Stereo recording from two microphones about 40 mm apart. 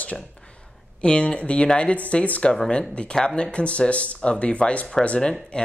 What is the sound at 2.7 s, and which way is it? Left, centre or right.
Speech, left.